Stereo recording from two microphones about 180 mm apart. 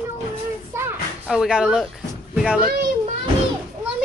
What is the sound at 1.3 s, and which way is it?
Speech, 5° right (ahead or behind).